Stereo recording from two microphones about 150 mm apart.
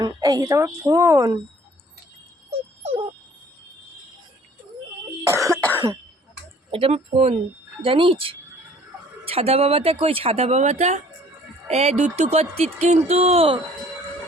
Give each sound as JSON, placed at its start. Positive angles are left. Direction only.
{"t": 0.1, "sound": "a woman's voice", "side_deg": -20}
{"t": 2.5, "sound": "music", "side_deg": -40}
{"t": 5.3, "sound": "cough", "side_deg": -20}
{"t": 5.5, "sound": "cough", "side_deg": 10}
{"t": 6.7, "sound": "speech", "side_deg": -40}